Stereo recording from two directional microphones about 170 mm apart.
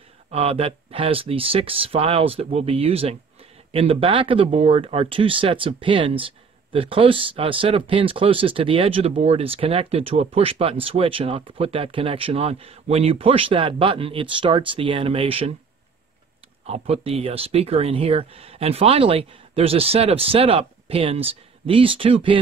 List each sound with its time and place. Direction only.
0.3 s speech: 35° right (ahead or behind)
16.6 s speech: 35° right (ahead or behind)